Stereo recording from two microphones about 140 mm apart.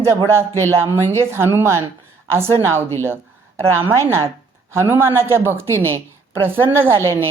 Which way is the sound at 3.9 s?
20° right (ahead or behind).